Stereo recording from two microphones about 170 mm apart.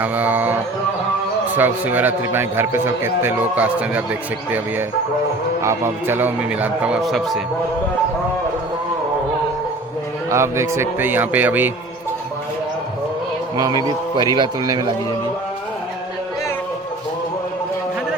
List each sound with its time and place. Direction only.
0.0 s speech: 10° right (ahead or behind)
1.5 s speech: 10° right (ahead or behind)
5.6 s speech: 15° right (ahead or behind)
10.2 s speech: 15° right (ahead or behind)
13.6 s a man's voice: 20° right (ahead or behind)